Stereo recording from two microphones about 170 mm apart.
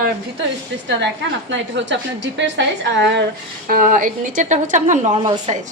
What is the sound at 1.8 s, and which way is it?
A woman's voice, 90° right.